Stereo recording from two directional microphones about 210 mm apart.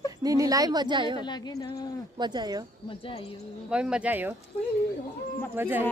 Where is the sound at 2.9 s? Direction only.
25° left (ahead or behind).